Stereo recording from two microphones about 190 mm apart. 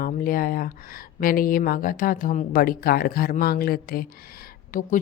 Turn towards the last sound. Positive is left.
turn(degrees=45)  # may be behind; listen again after turning